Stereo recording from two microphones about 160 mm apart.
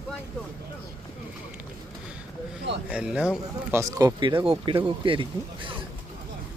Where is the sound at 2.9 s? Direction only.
5° right (ahead or behind).